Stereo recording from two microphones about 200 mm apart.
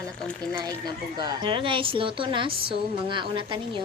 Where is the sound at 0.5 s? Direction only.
20° right (ahead or behind).